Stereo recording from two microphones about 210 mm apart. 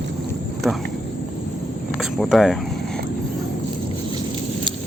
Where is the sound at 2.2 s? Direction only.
Centre (ahead or behind).